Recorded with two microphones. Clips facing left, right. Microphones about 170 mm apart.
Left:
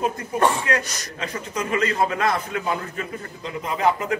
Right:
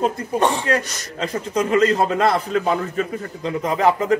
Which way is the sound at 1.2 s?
35° right (ahead or behind).